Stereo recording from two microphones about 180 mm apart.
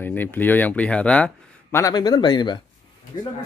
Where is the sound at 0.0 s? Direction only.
10° left (ahead or behind).